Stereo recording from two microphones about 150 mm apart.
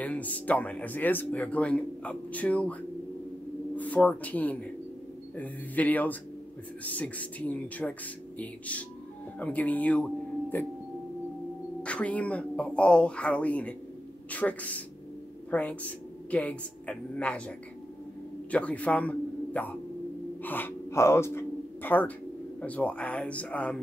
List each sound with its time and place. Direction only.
0.0 s speech: 10° left (ahead or behind)
11.8 s a woman's voice: 10° left (ahead or behind)
18.5 s a man's voice: 10° left (ahead or behind)